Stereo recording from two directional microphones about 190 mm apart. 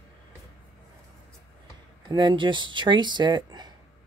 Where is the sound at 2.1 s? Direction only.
25° right (ahead or behind).